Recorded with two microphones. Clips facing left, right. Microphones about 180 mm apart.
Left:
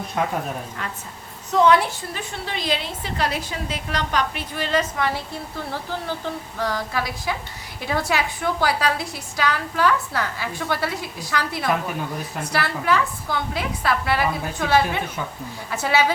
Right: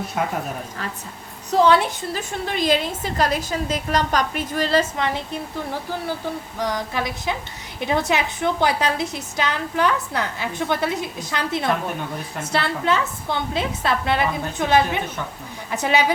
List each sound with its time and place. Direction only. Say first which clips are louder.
1.5 s a woman's voice: right 1 dB; 30° right (ahead or behind)
2.5 s a woman's voice: right 6 dB; 45° right (ahead or behind)
4.9 s a woman's voice: right 1 dB; 20° right (ahead or behind)